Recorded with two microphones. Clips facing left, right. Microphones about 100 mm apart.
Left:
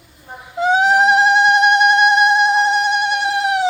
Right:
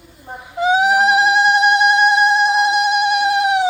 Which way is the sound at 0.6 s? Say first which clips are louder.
Even; 5° right (ahead or behind).